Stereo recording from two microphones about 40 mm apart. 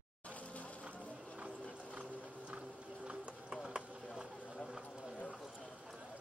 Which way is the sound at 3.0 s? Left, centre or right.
Centre.